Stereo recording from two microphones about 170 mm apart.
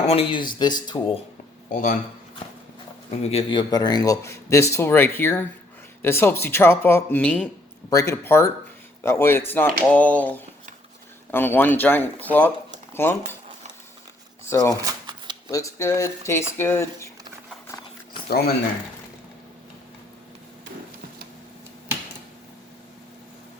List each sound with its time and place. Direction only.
0.1 s speech: 35° left (ahead or behind)
1.7 s speech: 50° left (ahead or behind)
3.2 s speech: 35° left (ahead or behind); by 7.4 s 5° left (ahead or behind)
7.9 s speech: 15° left (ahead or behind)
14.4 s speech: 15° left (ahead or behind)
18.3 s speech: 65° left (ahead or behind)